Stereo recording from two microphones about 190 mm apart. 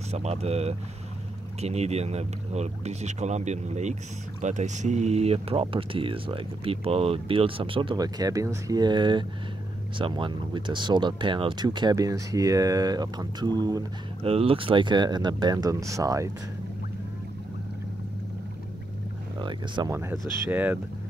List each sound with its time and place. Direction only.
0.1 s speech: 35° right (ahead or behind)
14.2 s speech: 30° right (ahead or behind)
19.3 s speech: 25° right (ahead or behind)